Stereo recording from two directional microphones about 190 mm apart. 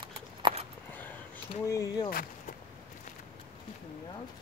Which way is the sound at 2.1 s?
50° left (ahead or behind).